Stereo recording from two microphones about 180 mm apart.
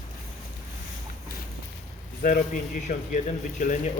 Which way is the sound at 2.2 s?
50° left (ahead or behind).